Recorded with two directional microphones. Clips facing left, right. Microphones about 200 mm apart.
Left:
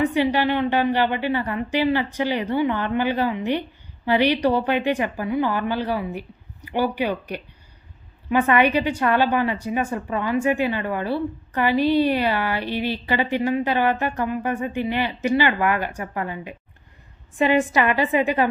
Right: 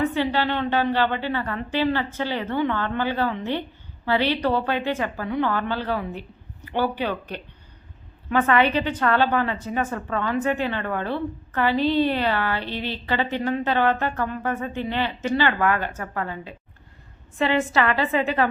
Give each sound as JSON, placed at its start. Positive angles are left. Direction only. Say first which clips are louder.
{"t": 0.0, "sound": "a woman's voice", "louder": "left 3 dB", "side_deg": 15}